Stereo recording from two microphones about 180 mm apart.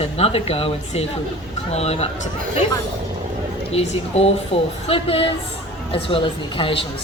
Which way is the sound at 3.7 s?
35° left (ahead or behind).